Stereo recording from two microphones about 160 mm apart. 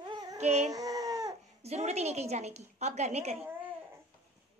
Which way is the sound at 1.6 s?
40° right (ahead or behind).